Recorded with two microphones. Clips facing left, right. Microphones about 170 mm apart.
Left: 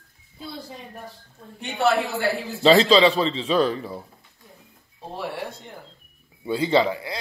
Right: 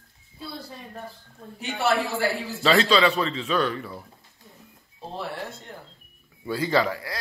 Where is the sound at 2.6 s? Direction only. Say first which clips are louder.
Left 5 dB; 30° left (ahead or behind).